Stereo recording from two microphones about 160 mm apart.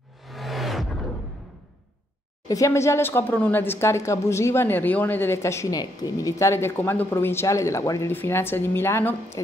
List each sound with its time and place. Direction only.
0.3 s music: centre (ahead or behind)
2.4 s speech: 20° left (ahead or behind)